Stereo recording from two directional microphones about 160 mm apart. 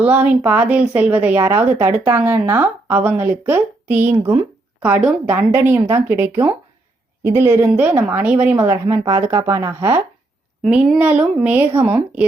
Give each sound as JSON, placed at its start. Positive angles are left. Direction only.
{"t": 0.0, "sound": "a woman's voice", "side_deg": -10}
{"t": 10.6, "sound": "a woman's voice", "side_deg": 0}